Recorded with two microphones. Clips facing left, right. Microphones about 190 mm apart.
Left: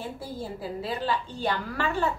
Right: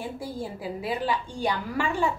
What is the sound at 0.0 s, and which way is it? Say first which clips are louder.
A woman's voice: right 2 dB; 15° right (ahead or behind).